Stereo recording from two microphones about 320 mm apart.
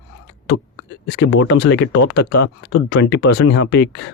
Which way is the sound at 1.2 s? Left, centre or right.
Left.